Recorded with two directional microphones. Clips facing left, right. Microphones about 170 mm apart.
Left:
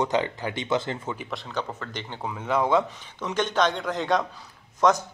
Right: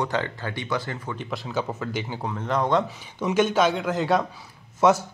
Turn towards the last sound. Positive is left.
turn(degrees=-10)  # may be behind; listen again after turning